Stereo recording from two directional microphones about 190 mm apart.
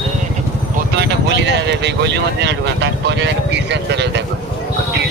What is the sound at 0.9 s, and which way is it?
Speech, 65° right (ahead or behind).